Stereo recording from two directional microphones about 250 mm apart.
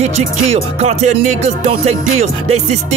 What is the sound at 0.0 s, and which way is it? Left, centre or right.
Music, right.